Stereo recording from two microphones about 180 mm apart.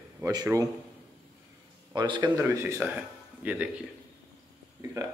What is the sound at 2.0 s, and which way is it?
Speech, 25° right (ahead or behind).